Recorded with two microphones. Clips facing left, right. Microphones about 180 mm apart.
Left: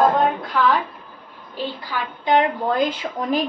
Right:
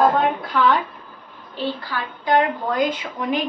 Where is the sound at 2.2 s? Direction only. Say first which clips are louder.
Left 1 dB; 25° left (ahead or behind).